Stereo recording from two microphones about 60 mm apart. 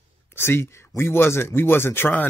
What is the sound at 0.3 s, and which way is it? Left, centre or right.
Speech, left.